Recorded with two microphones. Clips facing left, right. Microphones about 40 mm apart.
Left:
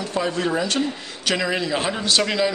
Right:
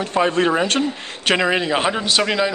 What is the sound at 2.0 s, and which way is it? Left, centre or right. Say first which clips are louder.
Speech: right 2 dB; centre.